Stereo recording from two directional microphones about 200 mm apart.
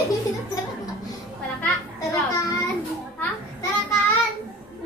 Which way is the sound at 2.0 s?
15° left (ahead or behind).